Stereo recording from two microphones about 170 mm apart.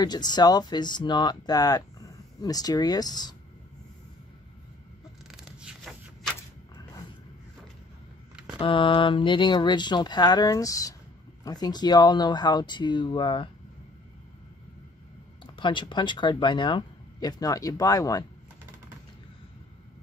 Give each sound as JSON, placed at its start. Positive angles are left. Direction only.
{"t": 0.0, "sound": "speech", "side_deg": 25}
{"t": 5.3, "sound": "a sound", "side_deg": -5}
{"t": 8.5, "sound": "speech", "side_deg": 30}
{"t": 15.5, "sound": "speech", "side_deg": 30}